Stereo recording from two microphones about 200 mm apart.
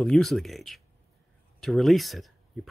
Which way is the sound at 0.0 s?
Centre (ahead or behind).